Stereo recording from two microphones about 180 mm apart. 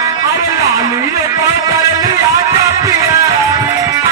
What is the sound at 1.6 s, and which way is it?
Music, 20° right (ahead or behind).